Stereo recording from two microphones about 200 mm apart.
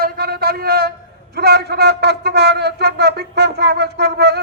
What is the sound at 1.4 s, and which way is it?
A man's voice, 55° right (ahead or behind).